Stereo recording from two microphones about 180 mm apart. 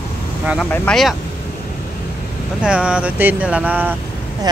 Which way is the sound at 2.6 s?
5° right (ahead or behind).